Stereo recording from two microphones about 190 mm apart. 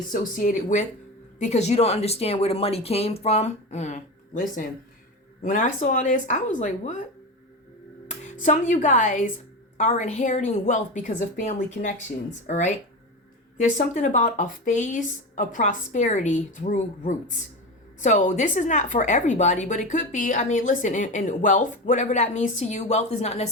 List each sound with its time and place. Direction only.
0.1 s a woman's voice: 45° left (ahead or behind)
8.0 s a woman's voice: 40° left (ahead or behind)